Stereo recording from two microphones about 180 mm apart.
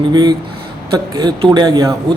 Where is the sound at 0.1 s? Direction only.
25° right (ahead or behind).